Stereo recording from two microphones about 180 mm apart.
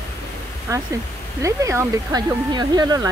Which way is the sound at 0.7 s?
20° right (ahead or behind).